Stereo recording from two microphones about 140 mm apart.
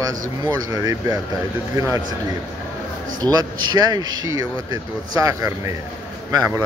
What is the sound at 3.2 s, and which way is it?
Speech, 30° right (ahead or behind).